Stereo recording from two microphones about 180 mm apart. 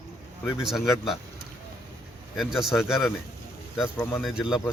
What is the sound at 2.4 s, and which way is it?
Speech, centre (ahead or behind).